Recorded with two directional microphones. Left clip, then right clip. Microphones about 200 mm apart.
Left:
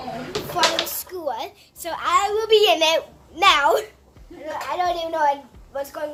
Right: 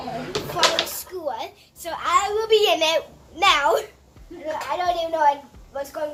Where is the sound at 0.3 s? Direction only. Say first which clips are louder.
Even; 45° left (ahead or behind).